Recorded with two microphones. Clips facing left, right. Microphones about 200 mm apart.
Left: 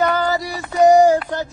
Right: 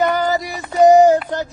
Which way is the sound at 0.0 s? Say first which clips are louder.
Right 1 dB; 20° right (ahead or behind).